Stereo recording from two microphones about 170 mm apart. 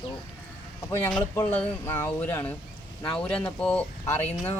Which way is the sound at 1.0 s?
10° left (ahead or behind).